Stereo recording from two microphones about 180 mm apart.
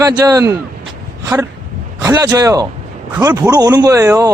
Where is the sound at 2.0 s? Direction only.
20° right (ahead or behind).